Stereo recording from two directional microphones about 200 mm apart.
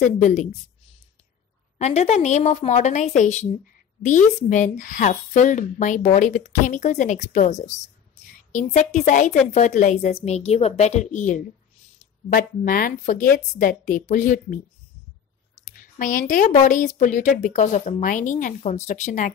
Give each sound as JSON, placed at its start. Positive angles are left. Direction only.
{"t": 0.0, "sound": "a woman's voice", "side_deg": 40}
{"t": 1.8, "sound": "a woman's voice", "side_deg": 35}
{"t": 15.7, "sound": "a woman's voice", "side_deg": 45}